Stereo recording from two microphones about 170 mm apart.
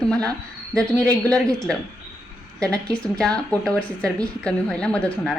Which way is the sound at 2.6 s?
5° left (ahead or behind).